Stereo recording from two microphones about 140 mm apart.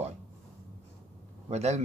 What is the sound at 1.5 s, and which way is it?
Speech, 50° right (ahead or behind).